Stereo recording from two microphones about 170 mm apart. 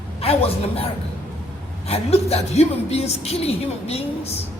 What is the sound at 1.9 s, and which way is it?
A woman's voice, 35° left (ahead or behind).